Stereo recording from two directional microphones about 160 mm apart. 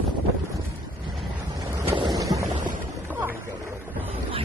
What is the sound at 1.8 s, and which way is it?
Boat, 30° right (ahead or behind).